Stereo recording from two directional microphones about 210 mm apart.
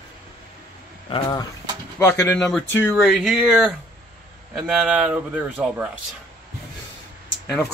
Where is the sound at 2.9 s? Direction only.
Centre (ahead or behind).